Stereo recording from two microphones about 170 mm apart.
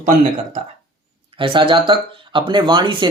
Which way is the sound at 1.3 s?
30° right (ahead or behind).